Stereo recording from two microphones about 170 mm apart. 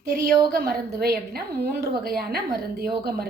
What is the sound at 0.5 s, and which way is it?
A woman's voice, 65° right (ahead or behind).